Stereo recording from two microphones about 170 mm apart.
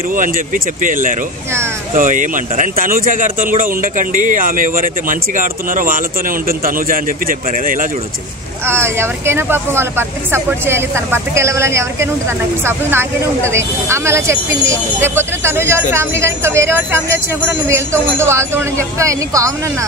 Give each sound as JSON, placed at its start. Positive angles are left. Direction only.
{"t": 0.1, "sound": "speech", "side_deg": -50}
{"t": 8.6, "sound": "speech", "side_deg": -15}